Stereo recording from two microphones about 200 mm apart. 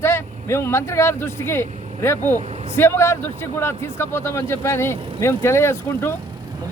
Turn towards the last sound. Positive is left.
turn(degrees=10)  # may be behind; listen again after turning